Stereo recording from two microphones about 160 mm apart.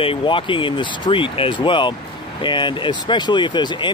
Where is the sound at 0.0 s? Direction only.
35° left (ahead or behind).